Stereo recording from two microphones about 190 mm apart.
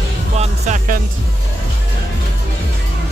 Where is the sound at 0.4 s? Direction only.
45° right (ahead or behind).